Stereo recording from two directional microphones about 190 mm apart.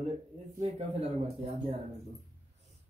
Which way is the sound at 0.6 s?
30° right (ahead or behind).